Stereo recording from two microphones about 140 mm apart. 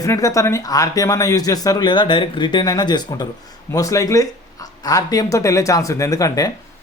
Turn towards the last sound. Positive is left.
turn(degrees=25)  # may be behind; listen again after turning